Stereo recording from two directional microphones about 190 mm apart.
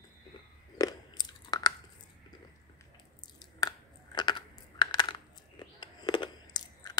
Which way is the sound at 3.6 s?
20° left (ahead or behind).